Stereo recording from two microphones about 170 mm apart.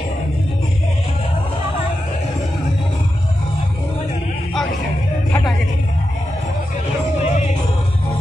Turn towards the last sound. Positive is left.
turn(degrees=45)  # may be behind; listen again after turning